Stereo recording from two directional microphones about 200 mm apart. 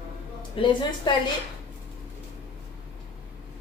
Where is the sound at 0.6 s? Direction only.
25° left (ahead or behind).